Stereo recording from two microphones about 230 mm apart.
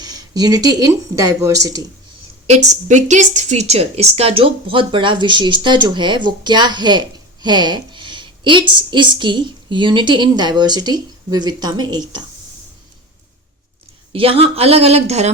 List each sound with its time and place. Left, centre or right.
0.0 s speech: centre
2.5 s a woman's voice: right
14.1 s a woman's voice: right